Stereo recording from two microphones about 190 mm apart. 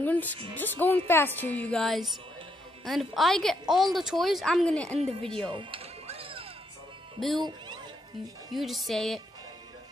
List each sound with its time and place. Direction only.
0.0 s a woman's voice: 10° left (ahead or behind)
5.5 s music: 25° right (ahead or behind)
7.2 s speech: centre (ahead or behind)
7.4 s music: 25° right (ahead or behind)
8.5 s speech: centre (ahead or behind)